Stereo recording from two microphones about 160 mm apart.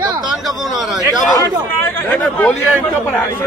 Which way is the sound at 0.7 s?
Centre (ahead or behind).